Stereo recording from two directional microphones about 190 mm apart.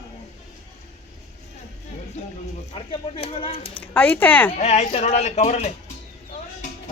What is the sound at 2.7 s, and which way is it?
Speech, 30° left (ahead or behind).